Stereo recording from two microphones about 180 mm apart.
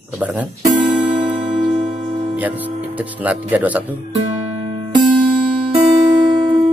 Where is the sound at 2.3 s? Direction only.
10° right (ahead or behind).